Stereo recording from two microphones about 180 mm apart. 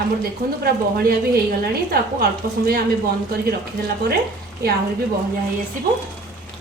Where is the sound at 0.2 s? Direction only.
55° right (ahead or behind).